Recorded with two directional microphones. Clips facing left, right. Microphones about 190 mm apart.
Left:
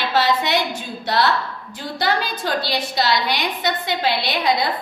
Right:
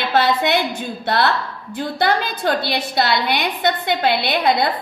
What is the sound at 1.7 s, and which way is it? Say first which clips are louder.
A woman's voice: right 3 dB; 55° right (ahead or behind).